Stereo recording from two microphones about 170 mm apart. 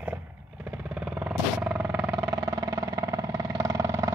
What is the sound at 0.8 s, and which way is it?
Vehicle, 5° right (ahead or behind).